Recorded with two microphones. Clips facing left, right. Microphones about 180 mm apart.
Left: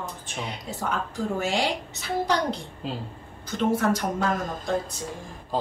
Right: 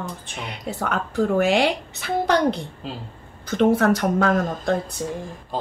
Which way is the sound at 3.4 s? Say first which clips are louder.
Right 6 dB; 70° right (ahead or behind).